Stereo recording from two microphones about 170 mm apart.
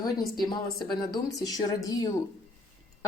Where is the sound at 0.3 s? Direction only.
25° left (ahead or behind).